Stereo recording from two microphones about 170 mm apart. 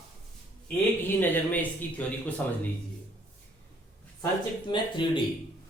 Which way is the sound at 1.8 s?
10° left (ahead or behind).